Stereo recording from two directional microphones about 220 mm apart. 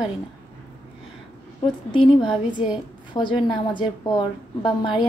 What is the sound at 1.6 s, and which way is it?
A woman's voice, 20° left (ahead or behind).